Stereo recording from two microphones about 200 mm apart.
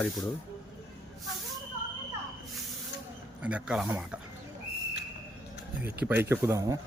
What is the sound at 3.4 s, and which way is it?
Speech, 5° right (ahead or behind).